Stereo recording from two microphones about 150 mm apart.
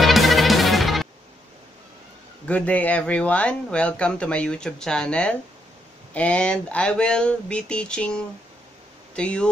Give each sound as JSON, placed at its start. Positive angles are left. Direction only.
{"t": 0.0, "sound": "music", "side_deg": 0}
{"t": 2.4, "sound": "speech", "side_deg": 10}